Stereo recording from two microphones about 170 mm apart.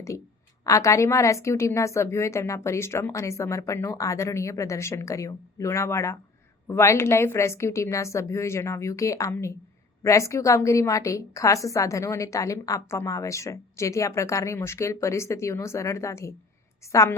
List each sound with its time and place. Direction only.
0.6 s a woman's voice: 20° left (ahead or behind)